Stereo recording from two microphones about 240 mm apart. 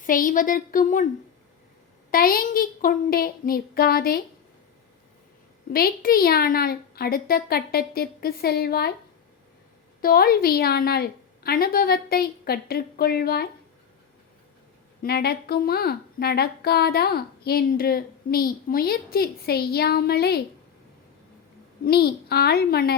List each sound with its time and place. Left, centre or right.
0.0 s a woman's voice: left
2.0 s a woman's voice: left
5.7 s a woman's voice: left
10.0 s a woman's voice: left
15.0 s a woman's voice: left
21.8 s a woman's voice: left